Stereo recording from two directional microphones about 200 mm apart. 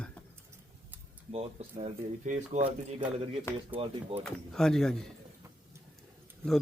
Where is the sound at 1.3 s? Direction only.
30° right (ahead or behind).